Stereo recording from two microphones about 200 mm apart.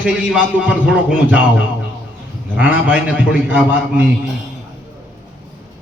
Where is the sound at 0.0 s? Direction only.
5° right (ahead or behind).